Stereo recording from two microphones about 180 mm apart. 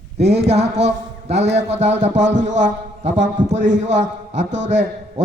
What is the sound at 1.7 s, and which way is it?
A man's voice, 40° right (ahead or behind).